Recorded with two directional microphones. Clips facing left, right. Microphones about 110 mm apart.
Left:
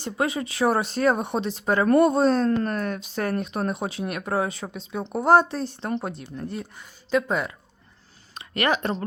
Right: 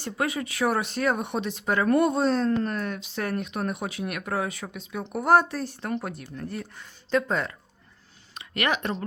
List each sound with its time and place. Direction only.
0.0 s speech: 25° left (ahead or behind)
7.1 s speech: 10° left (ahead or behind)
8.4 s speech: 35° left (ahead or behind)